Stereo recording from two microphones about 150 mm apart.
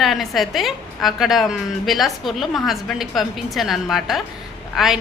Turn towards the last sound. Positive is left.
turn(degrees=0)  # may be behind; listen again after turning